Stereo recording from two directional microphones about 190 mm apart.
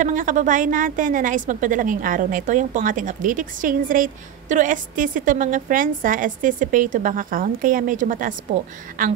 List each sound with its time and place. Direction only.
0.0 s a woman's voice: 45° right (ahead or behind)